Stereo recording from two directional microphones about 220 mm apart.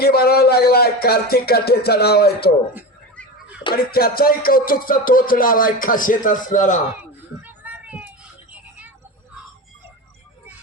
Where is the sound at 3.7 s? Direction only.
45° left (ahead or behind).